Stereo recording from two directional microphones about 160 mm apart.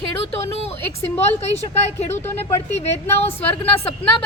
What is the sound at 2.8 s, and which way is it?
A woman's voice, 40° left (ahead or behind).